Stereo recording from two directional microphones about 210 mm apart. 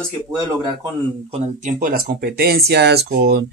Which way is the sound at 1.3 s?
40° right (ahead or behind).